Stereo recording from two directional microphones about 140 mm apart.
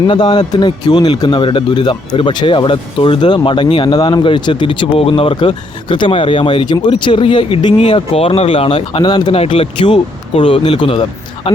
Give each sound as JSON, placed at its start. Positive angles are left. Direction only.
{"t": 0.0, "sound": "a man's voice", "side_deg": 30}